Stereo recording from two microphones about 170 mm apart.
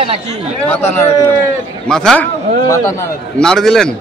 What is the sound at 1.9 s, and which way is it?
Speech, 5° left (ahead or behind).